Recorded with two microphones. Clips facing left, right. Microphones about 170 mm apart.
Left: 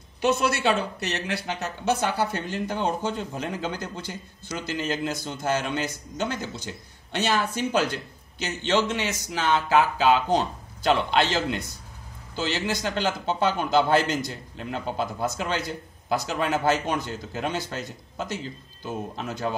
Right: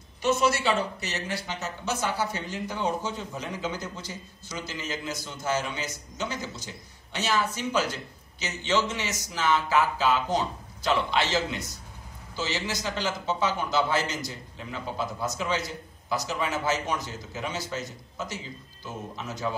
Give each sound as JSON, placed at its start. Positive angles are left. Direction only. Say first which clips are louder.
{"t": 0.2, "sound": "speech", "louder": "left 2 dB", "side_deg": 65}